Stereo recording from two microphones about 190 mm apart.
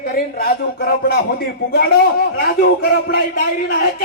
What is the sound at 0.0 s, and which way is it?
A man's voice, 50° left (ahead or behind).